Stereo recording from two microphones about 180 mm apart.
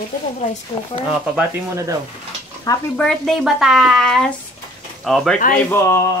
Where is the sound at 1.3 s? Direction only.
15° right (ahead or behind).